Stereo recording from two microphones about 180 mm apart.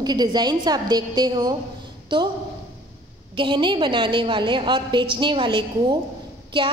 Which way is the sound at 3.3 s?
25° right (ahead or behind).